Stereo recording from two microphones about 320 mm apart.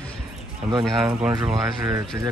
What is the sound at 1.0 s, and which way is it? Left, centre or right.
Speech, centre.